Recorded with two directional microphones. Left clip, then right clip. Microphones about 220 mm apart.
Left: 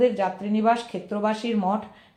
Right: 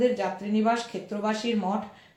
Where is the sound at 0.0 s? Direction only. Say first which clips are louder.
Left 3 dB; 40° left (ahead or behind).